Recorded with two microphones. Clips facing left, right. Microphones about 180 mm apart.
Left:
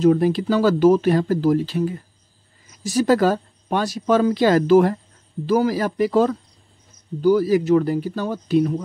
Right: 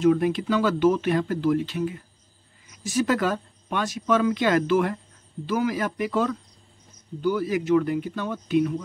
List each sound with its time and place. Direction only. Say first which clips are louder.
0.0 s speech: left 4 dB; 35° left (ahead or behind)